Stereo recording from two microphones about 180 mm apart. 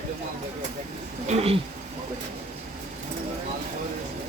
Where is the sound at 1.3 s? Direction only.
35° right (ahead or behind).